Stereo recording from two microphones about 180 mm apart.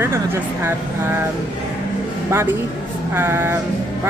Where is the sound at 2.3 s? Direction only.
10° right (ahead or behind).